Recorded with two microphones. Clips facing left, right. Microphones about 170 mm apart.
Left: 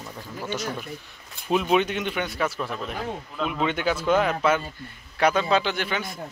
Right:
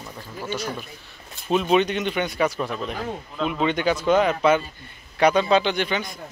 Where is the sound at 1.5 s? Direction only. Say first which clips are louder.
Right 2 dB; 5° left (ahead or behind).